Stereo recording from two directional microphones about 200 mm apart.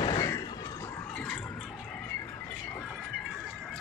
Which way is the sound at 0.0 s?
20° left (ahead or behind).